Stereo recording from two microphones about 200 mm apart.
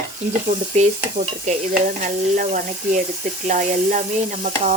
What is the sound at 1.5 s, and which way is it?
Sizzle, 40° right (ahead or behind).